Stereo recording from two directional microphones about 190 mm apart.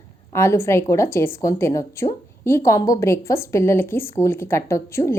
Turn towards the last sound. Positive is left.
turn(degrees=15)  # may be behind; listen again after turning